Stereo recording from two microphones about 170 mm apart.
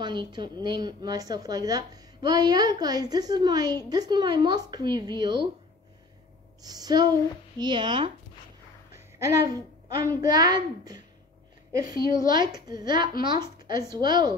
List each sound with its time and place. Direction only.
0.0 s a woman's voice: 25° right (ahead or behind)
6.6 s a woman's voice: 20° right (ahead or behind)
9.2 s a woman's voice: 20° right (ahead or behind)